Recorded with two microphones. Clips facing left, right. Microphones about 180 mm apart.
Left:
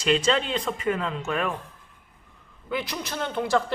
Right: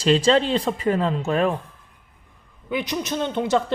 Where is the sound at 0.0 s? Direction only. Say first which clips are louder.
Right 5 dB; 30° right (ahead or behind).